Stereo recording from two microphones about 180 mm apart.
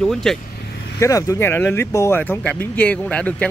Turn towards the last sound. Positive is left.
turn(degrees=5)  # may be behind; listen again after turning